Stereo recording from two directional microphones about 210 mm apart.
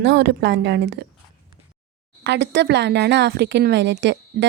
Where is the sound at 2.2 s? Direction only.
55° right (ahead or behind).